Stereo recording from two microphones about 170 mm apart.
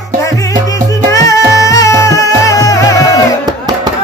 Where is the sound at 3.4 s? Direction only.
25° right (ahead or behind).